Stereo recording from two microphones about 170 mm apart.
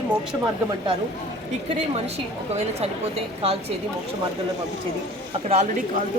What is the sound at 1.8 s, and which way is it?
Speech, 40° right (ahead or behind).